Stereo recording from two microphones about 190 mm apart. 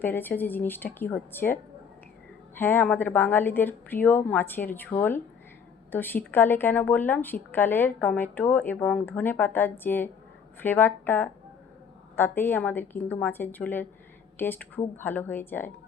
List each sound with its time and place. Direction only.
0.0 s speech: 10° left (ahead or behind)
2.6 s speech: 10° left (ahead or behind)